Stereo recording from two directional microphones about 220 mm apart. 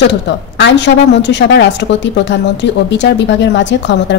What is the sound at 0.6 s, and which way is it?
Speech, 55° left (ahead or behind).